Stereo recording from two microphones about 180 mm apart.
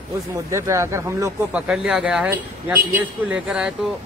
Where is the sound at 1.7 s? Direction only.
5° right (ahead or behind).